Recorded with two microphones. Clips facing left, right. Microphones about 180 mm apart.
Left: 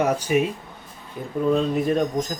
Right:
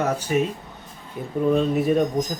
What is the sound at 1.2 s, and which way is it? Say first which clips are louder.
Speech: right 1 dB; centre (ahead or behind).